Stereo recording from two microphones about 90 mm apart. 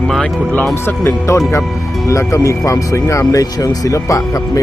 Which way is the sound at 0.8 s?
30° left (ahead or behind).